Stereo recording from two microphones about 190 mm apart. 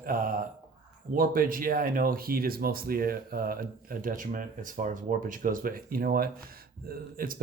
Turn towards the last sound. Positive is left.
turn(degrees=-50)  # may be behind; listen again after turning